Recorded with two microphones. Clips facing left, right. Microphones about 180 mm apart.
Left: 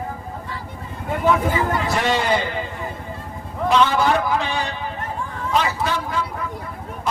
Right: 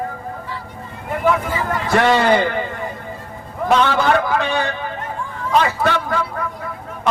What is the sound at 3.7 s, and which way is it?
A man's voice, 65° right (ahead or behind).